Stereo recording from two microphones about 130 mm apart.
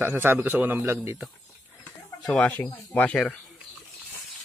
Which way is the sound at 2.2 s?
5° left (ahead or behind).